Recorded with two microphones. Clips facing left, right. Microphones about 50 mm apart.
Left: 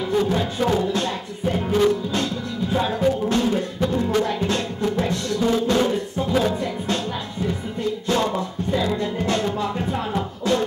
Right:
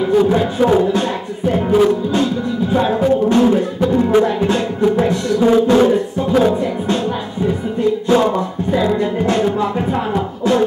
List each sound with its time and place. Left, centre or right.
0.0 s speech: centre
1.5 s music: centre
8.1 s music: centre